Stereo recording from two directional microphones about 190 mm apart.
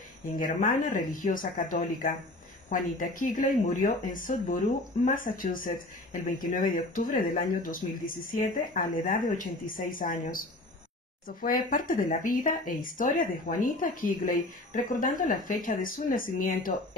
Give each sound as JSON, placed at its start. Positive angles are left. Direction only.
{"t": 0.4, "sound": "speech", "side_deg": 45}